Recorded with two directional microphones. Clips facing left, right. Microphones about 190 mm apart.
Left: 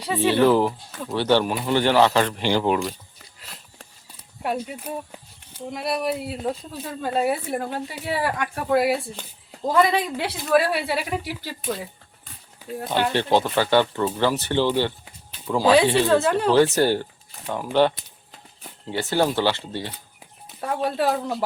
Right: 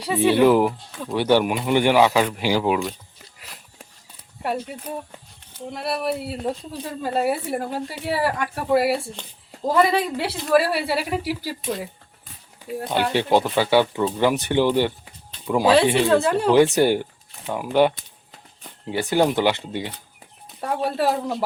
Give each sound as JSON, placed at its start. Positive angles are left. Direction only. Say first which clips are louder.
{"t": 0.0, "sound": "speech", "louder": "right 2 dB", "side_deg": -10}
{"t": 0.9, "sound": "speech", "louder": "right 1 dB", "side_deg": 0}
{"t": 1.1, "sound": "speech", "louder": "right 2 dB", "side_deg": -10}
{"t": 4.6, "sound": "speech", "louder": "even", "side_deg": 5}
{"t": 15.6, "sound": "speech", "louder": "even", "side_deg": -5}
{"t": 16.7, "sound": "speech", "louder": "right 2 dB", "side_deg": -15}
{"t": 17.3, "sound": "speech", "louder": "right 1 dB", "side_deg": 0}
{"t": 17.6, "sound": "speech", "louder": "right 1 dB", "side_deg": -10}
{"t": 20.6, "sound": "speech", "louder": "right 1 dB", "side_deg": -5}